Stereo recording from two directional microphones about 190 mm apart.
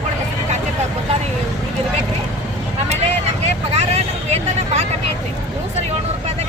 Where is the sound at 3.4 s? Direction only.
35° right (ahead or behind).